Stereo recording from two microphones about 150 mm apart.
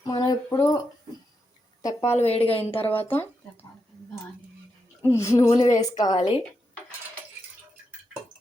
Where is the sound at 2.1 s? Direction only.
45° left (ahead or behind).